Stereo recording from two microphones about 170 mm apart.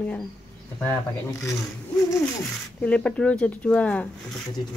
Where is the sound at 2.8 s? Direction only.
5° left (ahead or behind).